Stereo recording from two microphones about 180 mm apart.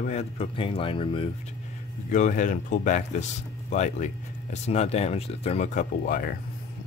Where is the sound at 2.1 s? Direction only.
45° left (ahead or behind).